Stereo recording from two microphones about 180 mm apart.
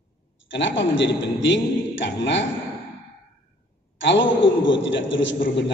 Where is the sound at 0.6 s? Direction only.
90° left.